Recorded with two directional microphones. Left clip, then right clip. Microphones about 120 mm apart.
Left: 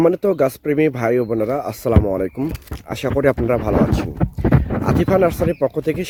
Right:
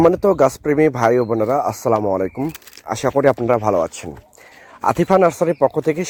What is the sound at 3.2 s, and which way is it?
Speech, 30° left (ahead or behind).